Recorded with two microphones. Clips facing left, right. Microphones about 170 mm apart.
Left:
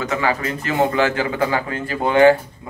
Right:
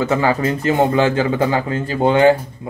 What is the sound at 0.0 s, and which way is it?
Speech, 35° right (ahead or behind).